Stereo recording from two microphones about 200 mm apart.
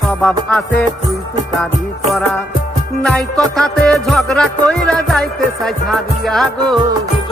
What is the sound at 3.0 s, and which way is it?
Music, 5° left (ahead or behind).